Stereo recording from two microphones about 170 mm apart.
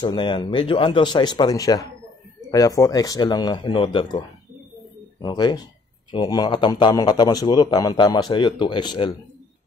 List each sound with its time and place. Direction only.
0.0 s a man's voice: 30° left (ahead or behind)
5.2 s a man's voice: 25° left (ahead or behind)